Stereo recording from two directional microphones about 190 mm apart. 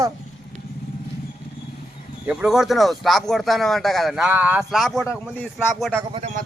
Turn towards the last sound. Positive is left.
turn(degrees=-40)  # may be behind; listen again after turning